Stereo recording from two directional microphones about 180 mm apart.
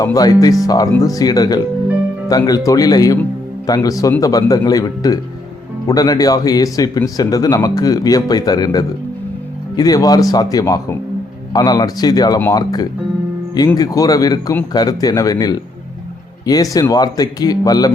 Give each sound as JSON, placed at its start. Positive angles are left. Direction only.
{"t": 0.0, "sound": "speech", "side_deg": 20}
{"t": 16.7, "sound": "speech", "side_deg": 20}